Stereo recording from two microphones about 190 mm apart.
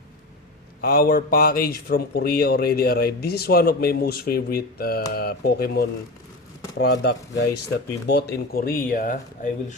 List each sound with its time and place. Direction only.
0.8 s speech: 55° left (ahead or behind)
6.7 s speech: 65° left (ahead or behind); by 9.7 s 40° left (ahead or behind)